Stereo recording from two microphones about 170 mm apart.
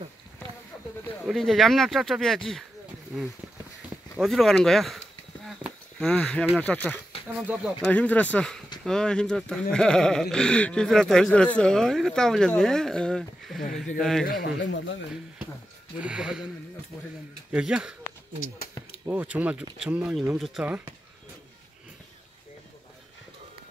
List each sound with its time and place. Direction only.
1.2 s speech: centre (ahead or behind)
3.9 s speech: centre (ahead or behind)
14.2 s a man's voice: 60° left (ahead or behind); by 15.0 s 90° left
16.0 s speech: 5° right (ahead or behind)
17.5 s speech: 5° right (ahead or behind)
19.0 s speech: 10° right (ahead or behind)